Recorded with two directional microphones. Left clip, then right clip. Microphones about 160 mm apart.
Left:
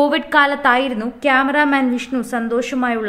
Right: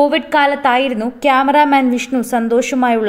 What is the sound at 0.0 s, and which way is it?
A woman's voice, 10° right (ahead or behind).